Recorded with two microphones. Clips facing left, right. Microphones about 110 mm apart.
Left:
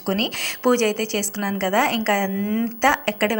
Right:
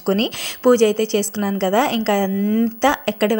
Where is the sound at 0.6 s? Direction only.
15° right (ahead or behind).